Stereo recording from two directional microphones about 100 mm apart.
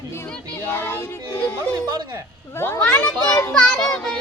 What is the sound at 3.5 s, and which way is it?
Speech, 5° left (ahead or behind).